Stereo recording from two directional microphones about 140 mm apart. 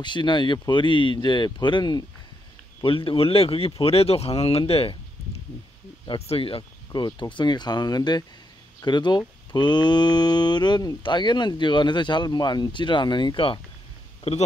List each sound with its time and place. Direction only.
0.0 s speech: 35° left (ahead or behind)
6.0 s speech: 45° left (ahead or behind)